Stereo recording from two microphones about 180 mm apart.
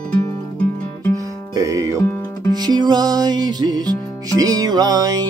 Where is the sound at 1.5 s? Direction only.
20° right (ahead or behind).